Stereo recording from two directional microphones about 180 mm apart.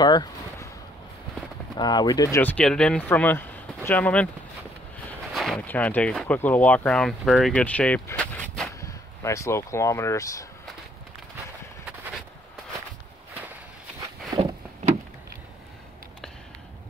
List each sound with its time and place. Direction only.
0.0 s a sound: 20° left (ahead or behind)
1.8 s speech: 25° left (ahead or behind)
2.5 s speech: 5° left (ahead or behind)
5.3 s speech: centre (ahead or behind)
8.8 s speech: 15° left (ahead or behind)